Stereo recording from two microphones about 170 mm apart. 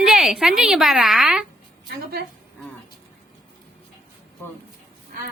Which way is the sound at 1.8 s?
65° right (ahead or behind).